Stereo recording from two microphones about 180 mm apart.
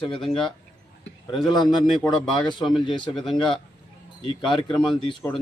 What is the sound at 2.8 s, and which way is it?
A man's voice, 25° left (ahead or behind).